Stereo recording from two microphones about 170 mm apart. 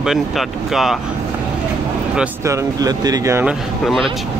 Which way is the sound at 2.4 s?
20° right (ahead or behind).